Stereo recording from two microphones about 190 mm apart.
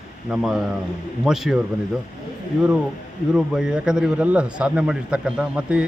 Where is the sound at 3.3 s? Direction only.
5° right (ahead or behind).